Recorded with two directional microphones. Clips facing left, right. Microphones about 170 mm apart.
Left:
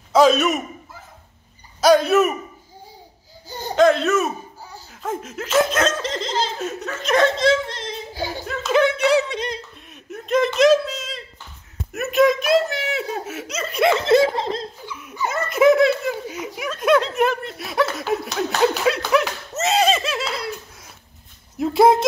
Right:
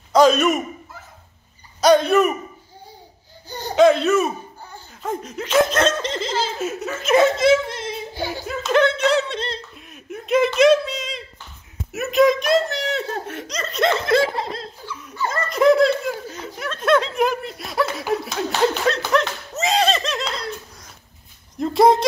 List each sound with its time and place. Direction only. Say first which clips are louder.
0.1 s a man's voice: right 1 dB; centre (ahead or behind)
1.8 s speech: even; 5° left (ahead or behind)
3.7 s speech: right 2 dB; centre (ahead or behind)
8.8 s speech: left 1 dB; 10° left (ahead or behind)
10.1 s a sound: right 1 dB; 5° right (ahead or behind)
11.9 s speech: right 1 dB; centre (ahead or behind)
14.0 s laughter: left 3 dB; 20° left (ahead or behind)
15.0 s speech: even; 10° left (ahead or behind)
21.5 s speech: even; 5° left (ahead or behind)